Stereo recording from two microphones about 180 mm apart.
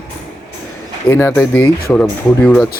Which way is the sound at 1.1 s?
15° left (ahead or behind).